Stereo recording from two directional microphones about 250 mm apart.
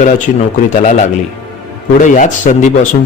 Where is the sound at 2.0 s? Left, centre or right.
Left.